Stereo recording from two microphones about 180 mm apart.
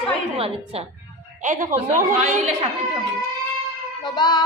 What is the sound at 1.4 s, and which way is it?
A woman's voice, 45° right (ahead or behind).